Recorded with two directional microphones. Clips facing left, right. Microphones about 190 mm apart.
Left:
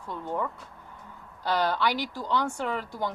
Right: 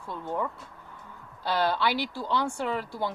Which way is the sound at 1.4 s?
10° right (ahead or behind).